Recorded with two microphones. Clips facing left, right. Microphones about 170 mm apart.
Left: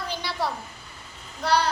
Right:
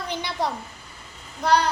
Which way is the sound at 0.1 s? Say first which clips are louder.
Right 2 dB; 20° right (ahead or behind).